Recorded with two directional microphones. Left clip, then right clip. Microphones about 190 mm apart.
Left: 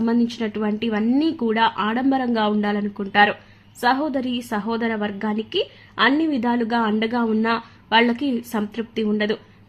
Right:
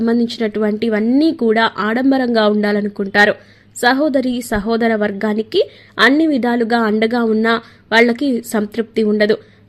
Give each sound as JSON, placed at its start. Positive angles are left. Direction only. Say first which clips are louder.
{"t": 0.0, "sound": "a woman's voice", "louder": "right 6 dB", "side_deg": -25}